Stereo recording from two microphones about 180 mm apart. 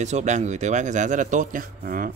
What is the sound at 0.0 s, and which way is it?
Speech, 40° right (ahead or behind).